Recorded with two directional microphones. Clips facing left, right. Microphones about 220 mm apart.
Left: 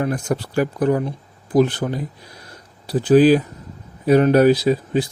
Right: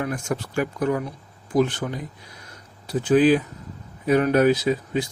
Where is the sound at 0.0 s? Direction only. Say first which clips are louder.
Left 5 dB; 35° left (ahead or behind).